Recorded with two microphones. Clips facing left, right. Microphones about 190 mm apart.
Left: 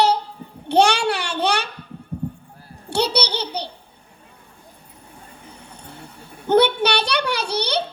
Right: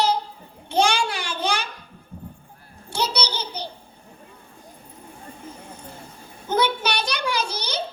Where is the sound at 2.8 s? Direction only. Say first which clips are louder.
Left 5 dB; 65° left (ahead or behind).